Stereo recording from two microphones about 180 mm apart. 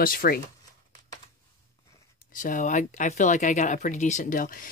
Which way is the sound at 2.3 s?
45° left (ahead or behind).